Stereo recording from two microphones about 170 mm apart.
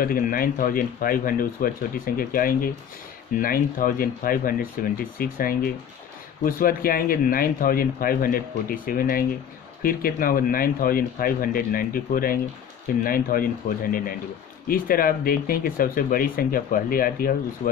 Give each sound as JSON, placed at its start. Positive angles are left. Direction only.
{"t": 0.0, "sound": "speech", "side_deg": 60}